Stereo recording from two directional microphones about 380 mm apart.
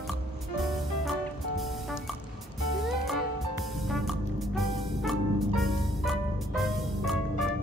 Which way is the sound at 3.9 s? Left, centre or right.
Centre.